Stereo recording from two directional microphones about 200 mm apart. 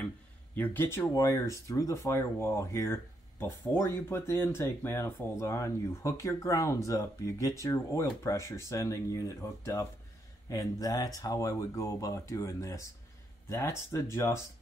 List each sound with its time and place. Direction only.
0.6 s speech: 10° left (ahead or behind)